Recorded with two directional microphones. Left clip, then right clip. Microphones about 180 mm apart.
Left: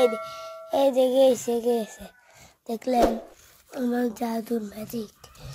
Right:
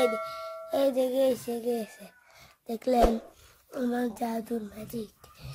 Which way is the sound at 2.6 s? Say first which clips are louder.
Left 2 dB; centre (ahead or behind).